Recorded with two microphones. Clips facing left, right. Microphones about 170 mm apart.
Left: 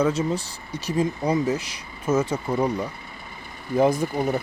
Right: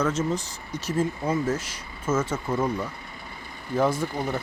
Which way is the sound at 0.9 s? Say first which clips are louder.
Left 3 dB; 15° left (ahead or behind).